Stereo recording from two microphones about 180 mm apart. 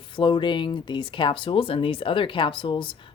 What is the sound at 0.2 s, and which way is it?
Speech, 25° left (ahead or behind).